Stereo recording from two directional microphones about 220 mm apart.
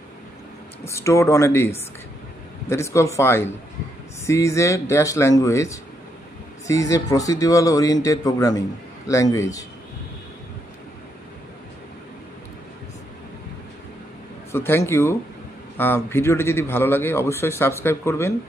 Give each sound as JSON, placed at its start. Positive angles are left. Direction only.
{"t": 0.8, "sound": "a man's voice", "side_deg": 15}
{"t": 14.5, "sound": "a man's voice", "side_deg": 10}